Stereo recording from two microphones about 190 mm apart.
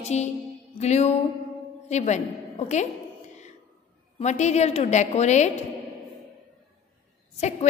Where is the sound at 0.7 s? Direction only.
35° left (ahead or behind).